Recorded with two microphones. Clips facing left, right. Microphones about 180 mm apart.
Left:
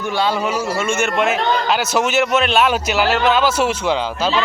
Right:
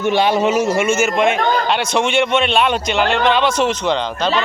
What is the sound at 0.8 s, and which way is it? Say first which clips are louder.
A man's voice: right 3 dB; 5° right (ahead or behind).